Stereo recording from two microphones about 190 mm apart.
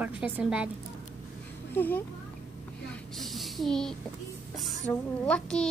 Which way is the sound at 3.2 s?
Centre (ahead or behind).